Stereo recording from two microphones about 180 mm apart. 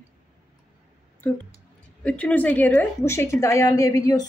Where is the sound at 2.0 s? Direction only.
5° left (ahead or behind).